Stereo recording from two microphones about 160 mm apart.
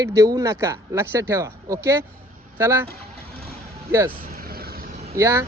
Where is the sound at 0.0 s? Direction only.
20° right (ahead or behind).